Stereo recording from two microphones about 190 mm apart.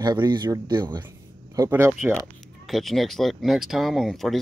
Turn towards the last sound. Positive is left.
turn(degrees=0)  # may be behind; listen again after turning